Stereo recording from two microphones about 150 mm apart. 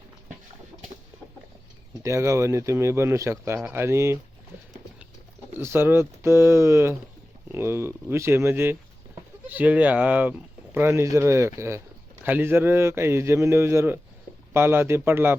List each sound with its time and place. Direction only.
1.9 s speech: 20° right (ahead or behind)
5.5 s speech: 15° right (ahead or behind)